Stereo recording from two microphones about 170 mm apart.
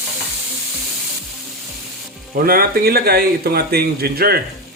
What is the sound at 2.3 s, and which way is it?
A man's voice, 60° right (ahead or behind).